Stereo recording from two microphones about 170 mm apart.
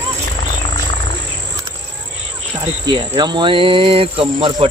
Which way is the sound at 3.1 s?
25° right (ahead or behind).